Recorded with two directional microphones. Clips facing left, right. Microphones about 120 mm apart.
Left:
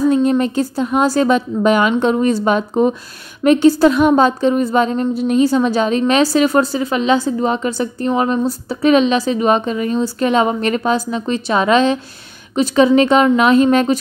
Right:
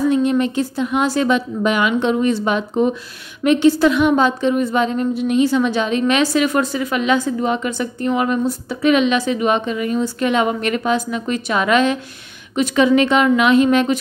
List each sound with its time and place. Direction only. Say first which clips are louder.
0.1 s a woman's voice: left 2 dB; 35° left (ahead or behind)